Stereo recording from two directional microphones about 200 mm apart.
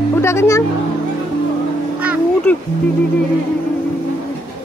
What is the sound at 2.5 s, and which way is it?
Speech, 10° left (ahead or behind).